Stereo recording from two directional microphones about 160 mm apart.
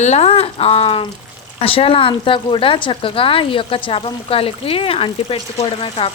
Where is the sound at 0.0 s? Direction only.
40° left (ahead or behind).